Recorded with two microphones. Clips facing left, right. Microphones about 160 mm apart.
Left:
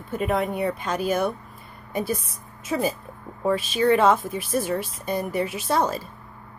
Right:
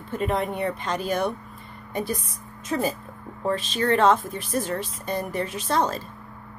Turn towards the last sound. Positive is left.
turn(degrees=10)  # may be behind; listen again after turning